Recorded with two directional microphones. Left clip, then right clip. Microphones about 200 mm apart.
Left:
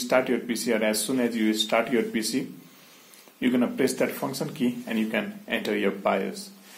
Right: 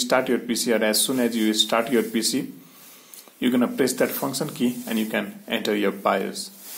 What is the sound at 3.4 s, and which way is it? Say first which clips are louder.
Speech: right 2 dB; 25° right (ahead or behind).